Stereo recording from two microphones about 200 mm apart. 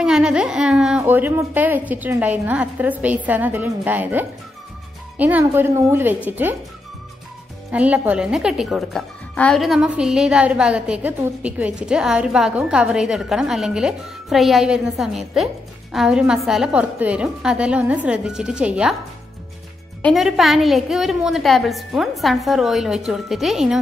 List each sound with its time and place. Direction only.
0.0 s speech: 5° right (ahead or behind)
7.7 s a woman's voice: 5° right (ahead or behind)
20.0 s a woman's voice: centre (ahead or behind)